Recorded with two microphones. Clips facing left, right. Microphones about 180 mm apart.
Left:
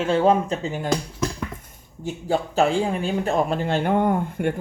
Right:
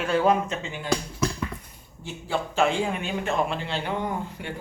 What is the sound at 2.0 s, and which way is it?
Speech, 40° left (ahead or behind).